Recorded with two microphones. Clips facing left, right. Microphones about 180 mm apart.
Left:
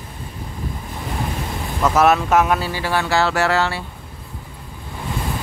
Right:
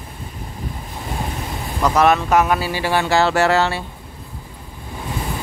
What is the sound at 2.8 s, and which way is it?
Speech, 20° right (ahead or behind).